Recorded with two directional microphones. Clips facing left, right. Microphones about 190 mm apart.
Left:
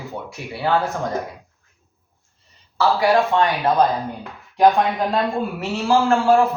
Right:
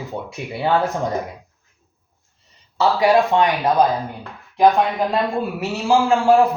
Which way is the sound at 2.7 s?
20° right (ahead or behind).